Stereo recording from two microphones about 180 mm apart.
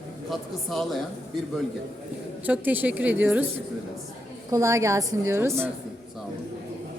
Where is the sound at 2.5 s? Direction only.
10° right (ahead or behind).